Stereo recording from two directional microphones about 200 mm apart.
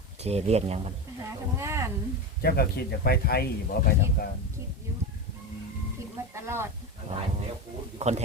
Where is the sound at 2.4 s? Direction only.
50° left (ahead or behind).